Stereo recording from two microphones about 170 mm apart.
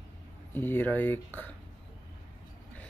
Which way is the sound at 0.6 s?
10° left (ahead or behind).